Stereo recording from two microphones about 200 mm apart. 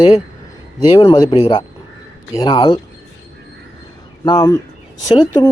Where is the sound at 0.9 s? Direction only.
20° left (ahead or behind).